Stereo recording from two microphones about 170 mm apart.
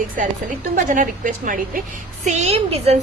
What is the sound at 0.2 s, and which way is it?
A woman's voice, 50° right (ahead or behind).